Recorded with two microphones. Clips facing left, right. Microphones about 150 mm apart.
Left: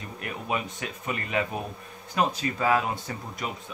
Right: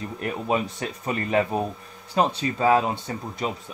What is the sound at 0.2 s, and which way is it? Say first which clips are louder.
Speech: right 6 dB; 35° right (ahead or behind).